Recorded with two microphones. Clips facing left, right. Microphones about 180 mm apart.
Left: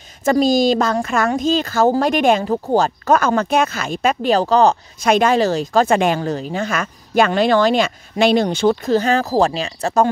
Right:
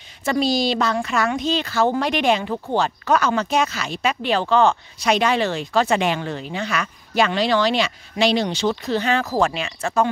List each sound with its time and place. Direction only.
0.2 s a woman's voice: 45° left (ahead or behind)